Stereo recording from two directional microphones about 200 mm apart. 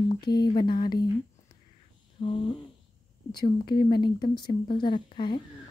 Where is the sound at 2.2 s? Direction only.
25° left (ahead or behind).